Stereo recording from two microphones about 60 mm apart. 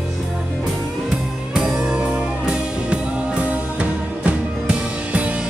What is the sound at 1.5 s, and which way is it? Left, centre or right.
Music, centre.